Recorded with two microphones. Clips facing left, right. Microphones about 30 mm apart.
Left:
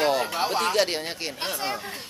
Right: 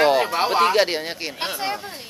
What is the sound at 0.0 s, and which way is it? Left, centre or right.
Speech, right.